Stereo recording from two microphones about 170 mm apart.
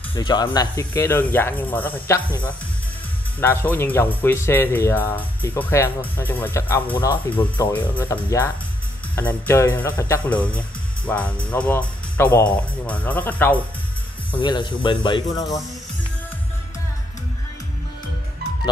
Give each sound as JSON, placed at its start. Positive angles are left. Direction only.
{"t": 0.1, "sound": "speech", "side_deg": 25}
{"t": 3.3, "sound": "speech", "side_deg": 10}
{"t": 14.4, "sound": "speech", "side_deg": 25}